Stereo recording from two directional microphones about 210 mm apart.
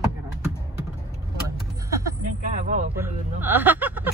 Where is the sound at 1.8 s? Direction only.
15° right (ahead or behind).